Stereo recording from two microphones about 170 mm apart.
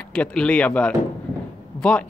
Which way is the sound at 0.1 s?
5° left (ahead or behind).